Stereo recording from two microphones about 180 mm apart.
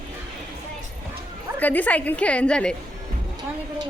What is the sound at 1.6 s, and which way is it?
A woman's voice, 10° left (ahead or behind).